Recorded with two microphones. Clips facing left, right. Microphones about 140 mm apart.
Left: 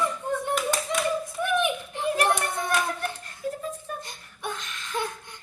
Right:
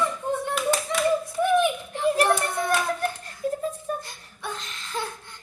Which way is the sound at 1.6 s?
15° left (ahead or behind).